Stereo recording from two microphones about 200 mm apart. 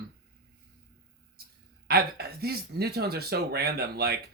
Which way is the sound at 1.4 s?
50° right (ahead or behind).